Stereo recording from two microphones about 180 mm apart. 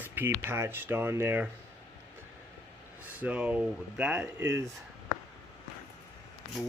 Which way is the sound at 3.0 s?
5° right (ahead or behind).